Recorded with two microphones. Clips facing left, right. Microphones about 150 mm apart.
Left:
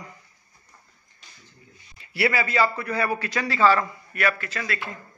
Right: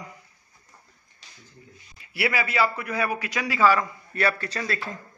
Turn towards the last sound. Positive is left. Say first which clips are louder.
# right 1 dB
turn(degrees=-35)  # may be behind; listen again after turning